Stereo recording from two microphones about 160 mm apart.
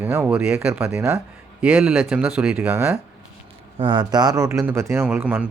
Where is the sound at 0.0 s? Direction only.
10° right (ahead or behind).